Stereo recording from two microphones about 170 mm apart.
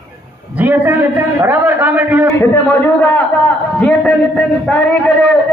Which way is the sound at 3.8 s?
5° left (ahead or behind).